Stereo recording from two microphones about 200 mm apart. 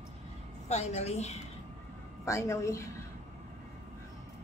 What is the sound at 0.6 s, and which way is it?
Speech, 35° left (ahead or behind).